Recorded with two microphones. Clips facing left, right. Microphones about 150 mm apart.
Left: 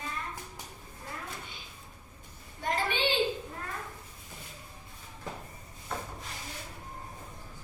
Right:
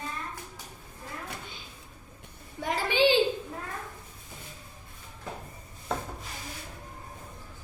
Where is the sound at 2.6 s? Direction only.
90° right.